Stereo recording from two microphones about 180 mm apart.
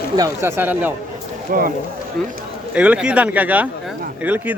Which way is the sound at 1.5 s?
50° right (ahead or behind).